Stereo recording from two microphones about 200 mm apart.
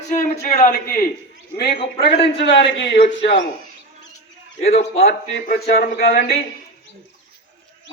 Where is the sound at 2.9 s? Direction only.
30° left (ahead or behind).